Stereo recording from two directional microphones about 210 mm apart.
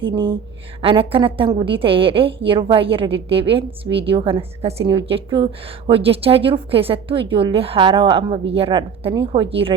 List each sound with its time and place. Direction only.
0.0 s a woman's voice: 25° right (ahead or behind)